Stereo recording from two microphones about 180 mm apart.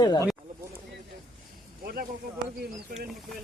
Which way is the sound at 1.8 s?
55° right (ahead or behind).